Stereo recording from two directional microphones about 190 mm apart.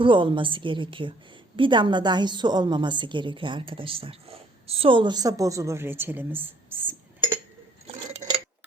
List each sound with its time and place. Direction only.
0.0 s a woman's voice: 25° right (ahead or behind); by 6.9 s 10° right (ahead or behind)